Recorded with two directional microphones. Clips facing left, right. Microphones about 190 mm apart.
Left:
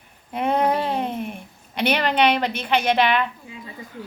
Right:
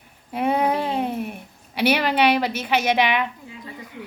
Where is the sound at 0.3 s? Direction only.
5° right (ahead or behind).